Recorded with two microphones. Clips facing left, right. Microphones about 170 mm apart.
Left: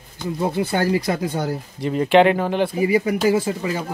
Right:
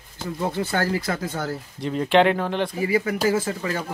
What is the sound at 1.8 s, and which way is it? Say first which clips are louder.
Speech: left 3 dB; 5° left (ahead or behind).